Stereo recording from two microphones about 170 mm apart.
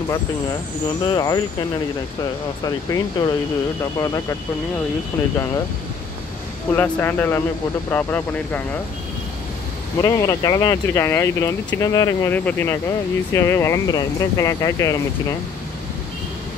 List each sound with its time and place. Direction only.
1.0 s speech: 25° left (ahead or behind)
2.6 s speech: 20° left (ahead or behind)
6.7 s speech: 15° left (ahead or behind)
10.0 s speech: 20° left (ahead or behind)